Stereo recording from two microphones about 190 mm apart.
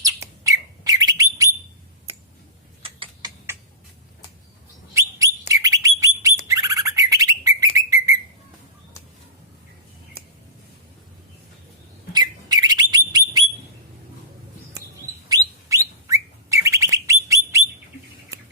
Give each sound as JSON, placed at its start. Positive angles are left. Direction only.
{"t": 0.0, "sound": "bird", "side_deg": -15}
{"t": 2.8, "sound": "a sound", "side_deg": -25}
{"t": 4.9, "sound": "bird", "side_deg": -15}
{"t": 12.1, "sound": "bird", "side_deg": -20}
{"t": 15.3, "sound": "bird", "side_deg": -15}